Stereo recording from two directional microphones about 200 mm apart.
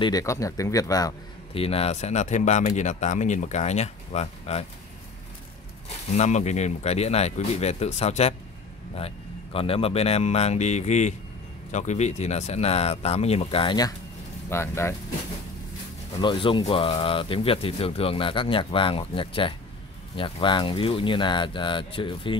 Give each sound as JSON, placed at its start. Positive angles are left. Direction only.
{"t": 0.0, "sound": "a man's voice", "side_deg": 15}
{"t": 6.1, "sound": "a man's voice", "side_deg": 35}
{"t": 16.2, "sound": "speech", "side_deg": 25}